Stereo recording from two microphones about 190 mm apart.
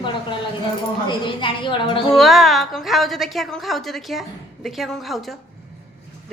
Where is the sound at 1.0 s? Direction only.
25° left (ahead or behind).